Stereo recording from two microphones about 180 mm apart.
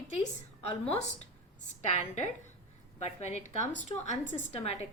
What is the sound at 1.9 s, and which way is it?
A woman's voice, 40° left (ahead or behind).